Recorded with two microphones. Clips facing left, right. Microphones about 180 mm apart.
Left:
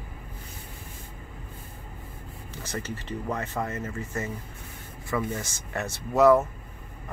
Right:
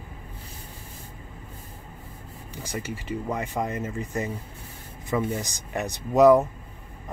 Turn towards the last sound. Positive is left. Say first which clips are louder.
# right 3 dB
turn(degrees=-15)  # may be behind; listen again after turning